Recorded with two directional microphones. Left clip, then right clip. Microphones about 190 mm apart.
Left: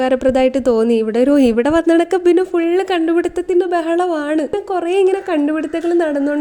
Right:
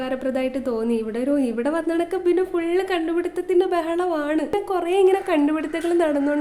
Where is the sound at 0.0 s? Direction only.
40° left (ahead or behind).